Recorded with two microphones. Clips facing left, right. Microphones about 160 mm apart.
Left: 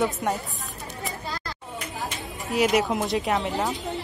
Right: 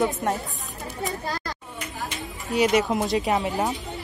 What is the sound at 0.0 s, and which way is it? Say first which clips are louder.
Speech: right 1 dB; centre (ahead or behind).